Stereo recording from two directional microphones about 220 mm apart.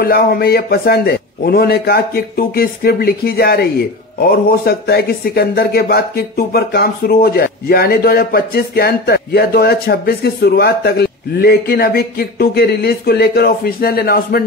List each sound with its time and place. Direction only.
0.0 s speech: 45° left (ahead or behind)